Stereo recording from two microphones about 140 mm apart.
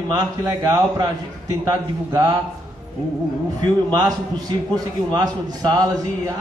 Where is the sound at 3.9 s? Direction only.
30° right (ahead or behind).